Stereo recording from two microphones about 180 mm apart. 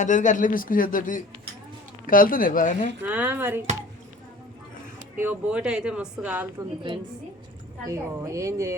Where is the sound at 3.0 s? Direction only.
10° right (ahead or behind).